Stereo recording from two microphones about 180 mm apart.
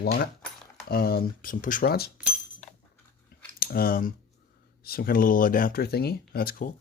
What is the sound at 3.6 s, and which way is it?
Speech, 55° left (ahead or behind).